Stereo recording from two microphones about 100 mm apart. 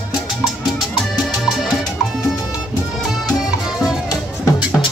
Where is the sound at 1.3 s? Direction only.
Centre (ahead or behind).